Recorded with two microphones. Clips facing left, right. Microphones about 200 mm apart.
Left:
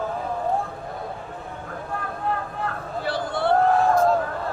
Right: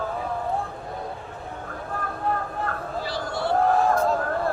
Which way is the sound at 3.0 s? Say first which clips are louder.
Left 5 dB; 55° left (ahead or behind).